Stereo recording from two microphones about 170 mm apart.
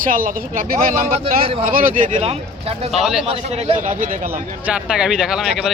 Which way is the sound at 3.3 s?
35° right (ahead or behind).